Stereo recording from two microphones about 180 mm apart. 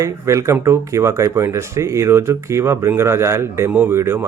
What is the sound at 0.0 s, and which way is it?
Speech, 15° right (ahead or behind).